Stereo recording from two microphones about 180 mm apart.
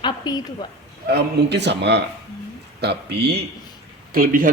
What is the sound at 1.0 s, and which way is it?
A man's voice, 65° right (ahead or behind).